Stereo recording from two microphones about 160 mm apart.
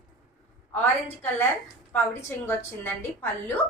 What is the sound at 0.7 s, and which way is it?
Speech, 15° left (ahead or behind).